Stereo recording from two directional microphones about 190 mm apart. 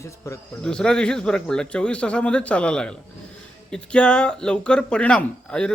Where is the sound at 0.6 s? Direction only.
5° left (ahead or behind).